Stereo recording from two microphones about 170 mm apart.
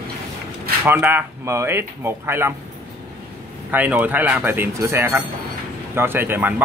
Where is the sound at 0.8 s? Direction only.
15° right (ahead or behind).